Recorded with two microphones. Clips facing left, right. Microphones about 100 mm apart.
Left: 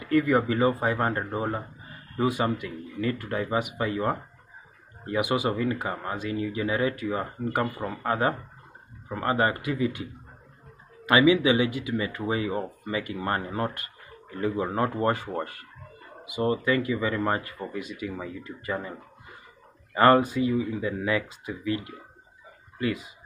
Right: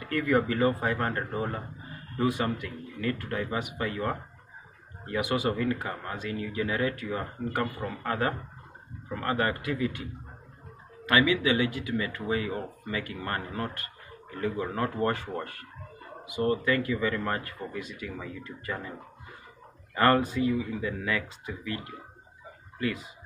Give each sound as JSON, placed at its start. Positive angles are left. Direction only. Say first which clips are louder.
{"t": 0.0, "sound": "speech", "louder": "left 3 dB", "side_deg": 15}
{"t": 11.1, "sound": "speech", "louder": "left 4 dB", "side_deg": 15}